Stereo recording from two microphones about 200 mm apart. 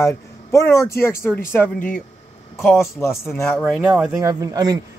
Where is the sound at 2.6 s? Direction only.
Centre (ahead or behind).